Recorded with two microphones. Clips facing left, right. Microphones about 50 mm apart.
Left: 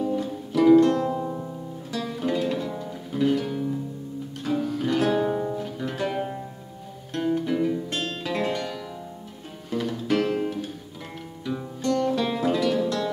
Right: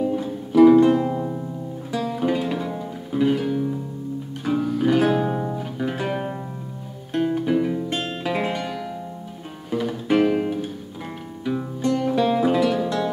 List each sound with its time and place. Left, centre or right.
0.0 s music: centre